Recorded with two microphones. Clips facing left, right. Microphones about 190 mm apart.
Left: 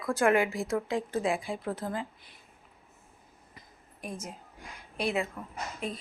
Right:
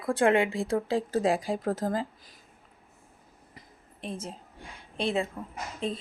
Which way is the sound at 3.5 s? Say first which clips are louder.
Right 2 dB; 30° right (ahead or behind).